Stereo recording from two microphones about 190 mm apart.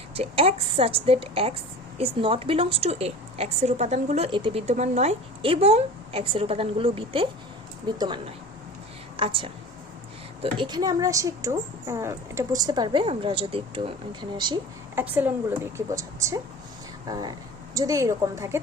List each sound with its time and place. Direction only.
0.2 s a woman's voice: 30° right (ahead or behind)
4.6 s a woman's voice: 35° right (ahead or behind)
14.9 s a woman's voice: 10° right (ahead or behind)